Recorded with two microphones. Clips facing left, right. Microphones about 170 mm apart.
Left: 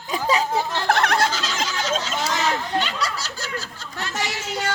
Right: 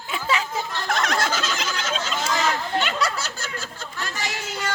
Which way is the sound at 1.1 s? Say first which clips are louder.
Left 2 dB; 50° right (ahead or behind).